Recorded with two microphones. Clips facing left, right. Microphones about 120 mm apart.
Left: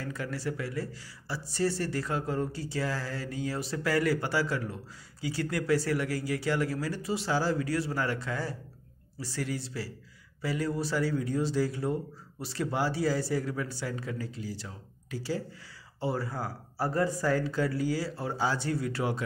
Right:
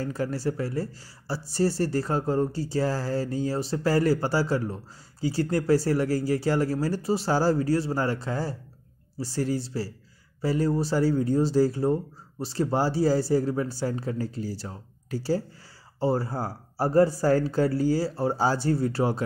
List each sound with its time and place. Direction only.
0.0 s speech: 35° right (ahead or behind)